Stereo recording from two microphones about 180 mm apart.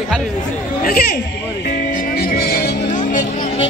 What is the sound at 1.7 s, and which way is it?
Music, 50° left (ahead or behind).